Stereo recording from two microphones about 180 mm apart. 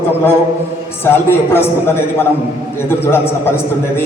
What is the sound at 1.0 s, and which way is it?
Speech, 15° left (ahead or behind).